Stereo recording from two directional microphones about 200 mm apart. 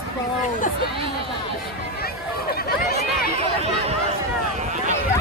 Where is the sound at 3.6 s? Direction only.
30° right (ahead or behind).